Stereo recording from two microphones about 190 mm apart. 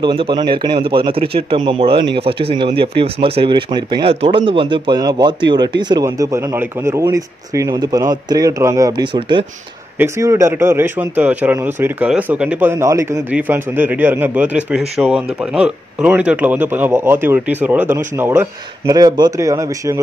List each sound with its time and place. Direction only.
0.0 s speech: 25° right (ahead or behind)
9.9 s a man's voice: 15° right (ahead or behind)